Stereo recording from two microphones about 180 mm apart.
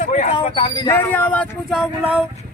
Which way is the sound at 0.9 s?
10° left (ahead or behind).